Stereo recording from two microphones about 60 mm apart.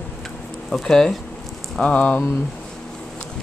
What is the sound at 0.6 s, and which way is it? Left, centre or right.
Speech, centre.